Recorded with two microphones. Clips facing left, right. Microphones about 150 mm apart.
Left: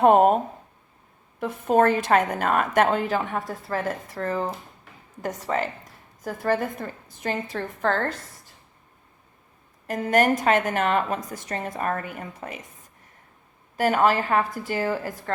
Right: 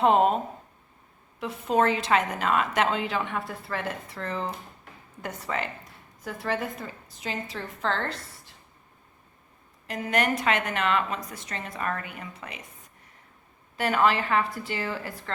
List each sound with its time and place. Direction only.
0.0 s speech: 50° left (ahead or behind)
1.4 s a woman's voice: 50° left (ahead or behind)
9.8 s a woman's voice: 50° left (ahead or behind)
13.7 s a woman's voice: 45° left (ahead or behind)